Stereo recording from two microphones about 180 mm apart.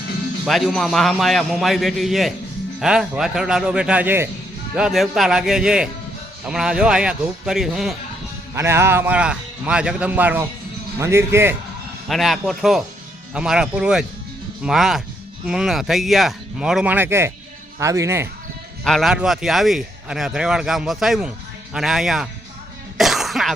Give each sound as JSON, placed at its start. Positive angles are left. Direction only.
{"t": 0.4, "sound": "speech", "side_deg": 0}
{"t": 8.5, "sound": "a man's voice", "side_deg": -15}
{"t": 12.0, "sound": "a man's voice", "side_deg": 0}
{"t": 18.9, "sound": "speech", "side_deg": 0}
{"t": 23.0, "sound": "throat clearing", "side_deg": 0}